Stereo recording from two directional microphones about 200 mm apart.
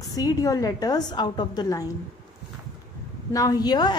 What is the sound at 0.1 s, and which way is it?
A woman's voice, 15° left (ahead or behind).